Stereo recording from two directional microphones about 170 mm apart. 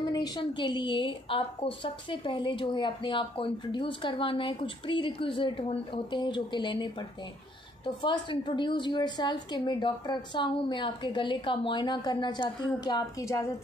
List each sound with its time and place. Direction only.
0.0 s a woman's voice: 25° left (ahead or behind)